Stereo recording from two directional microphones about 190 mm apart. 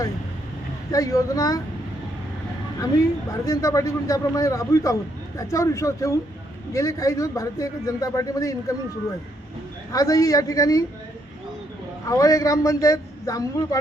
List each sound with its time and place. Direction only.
0.9 s speech: 20° left (ahead or behind)
3.3 s a man's voice: 15° left (ahead or behind)
9.9 s a man's voice: 20° left (ahead or behind)
12.0 s a man's voice: 15° left (ahead or behind)